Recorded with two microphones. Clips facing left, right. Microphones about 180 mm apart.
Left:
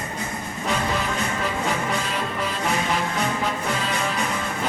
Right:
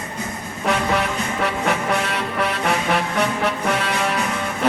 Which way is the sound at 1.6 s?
70° right (ahead or behind).